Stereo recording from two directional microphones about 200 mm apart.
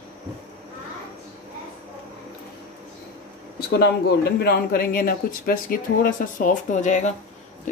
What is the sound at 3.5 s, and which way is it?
Speech, 55° left (ahead or behind).